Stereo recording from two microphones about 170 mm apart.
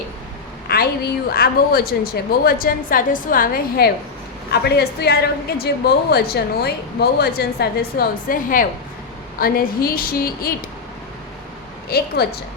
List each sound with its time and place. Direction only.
0.7 s a sound: 60° left (ahead or behind)
1.3 s a woman's voice: 65° left (ahead or behind)
11.9 s a woman's voice: 65° left (ahead or behind)